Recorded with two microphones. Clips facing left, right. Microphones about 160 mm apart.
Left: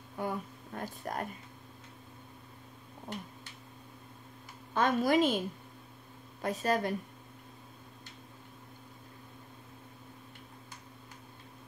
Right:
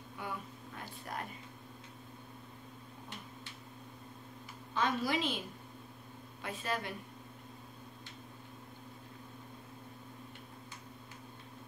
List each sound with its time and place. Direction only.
0.2 s a sound: 45° left (ahead or behind)
0.7 s speech: 45° left (ahead or behind)
4.7 s a woman's voice: 50° left (ahead or behind)
6.4 s a woman's voice: 40° left (ahead or behind)